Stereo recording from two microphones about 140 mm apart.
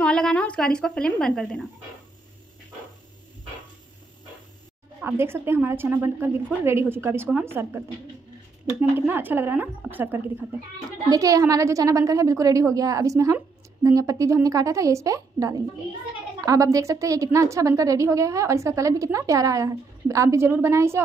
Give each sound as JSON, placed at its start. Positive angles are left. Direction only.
{"t": 0.0, "sound": "a woman's voice", "side_deg": 5}
{"t": 5.0, "sound": "a woman's voice", "side_deg": -15}
{"t": 11.1, "sound": "a woman's voice", "side_deg": -25}